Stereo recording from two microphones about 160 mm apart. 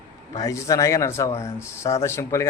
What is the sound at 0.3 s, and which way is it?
A man's voice, 20° left (ahead or behind).